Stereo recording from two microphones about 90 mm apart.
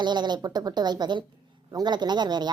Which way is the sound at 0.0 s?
55° right (ahead or behind).